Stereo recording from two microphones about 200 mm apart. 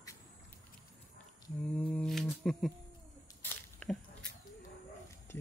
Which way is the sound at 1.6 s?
5° left (ahead or behind).